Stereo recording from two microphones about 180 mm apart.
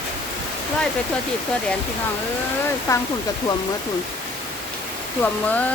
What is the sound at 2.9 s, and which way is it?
Speech, 20° left (ahead or behind).